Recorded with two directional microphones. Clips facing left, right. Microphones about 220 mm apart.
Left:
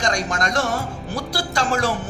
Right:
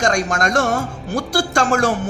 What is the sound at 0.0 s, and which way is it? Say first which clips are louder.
A man's voice: right 4 dB; 50° right (ahead or behind).